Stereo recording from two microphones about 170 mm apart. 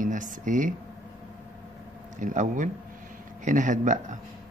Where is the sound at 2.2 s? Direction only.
50° right (ahead or behind).